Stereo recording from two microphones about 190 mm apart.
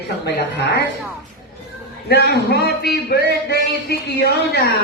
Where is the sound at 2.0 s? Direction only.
60° left (ahead or behind).